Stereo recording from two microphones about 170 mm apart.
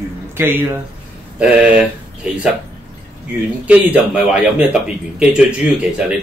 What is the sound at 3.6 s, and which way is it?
Speech, 10° right (ahead or behind).